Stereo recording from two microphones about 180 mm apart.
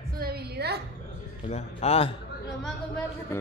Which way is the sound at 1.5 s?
35° left (ahead or behind).